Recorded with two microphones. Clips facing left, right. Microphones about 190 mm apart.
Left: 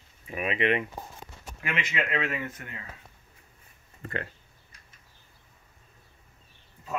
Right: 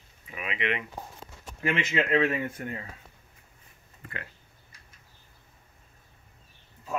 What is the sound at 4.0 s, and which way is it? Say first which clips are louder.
Speech: left 7 dB; 40° left (ahead or behind).